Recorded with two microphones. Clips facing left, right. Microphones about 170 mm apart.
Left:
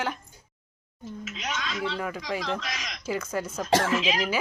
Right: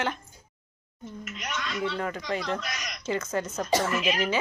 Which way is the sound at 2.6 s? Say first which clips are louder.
Left 1 dB; 90° left.